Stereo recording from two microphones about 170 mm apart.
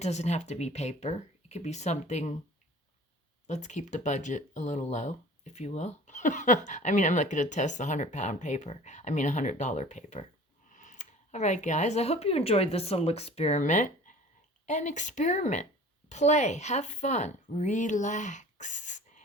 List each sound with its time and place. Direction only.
0.0 s speech: 40° left (ahead or behind)
3.4 s speech: 45° left (ahead or behind)